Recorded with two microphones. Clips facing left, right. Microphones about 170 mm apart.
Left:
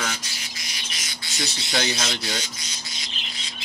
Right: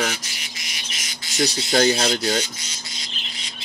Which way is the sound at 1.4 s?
45° right (ahead or behind).